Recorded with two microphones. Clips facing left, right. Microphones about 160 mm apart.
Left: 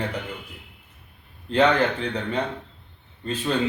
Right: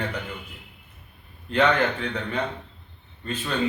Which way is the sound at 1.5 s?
30° left (ahead or behind).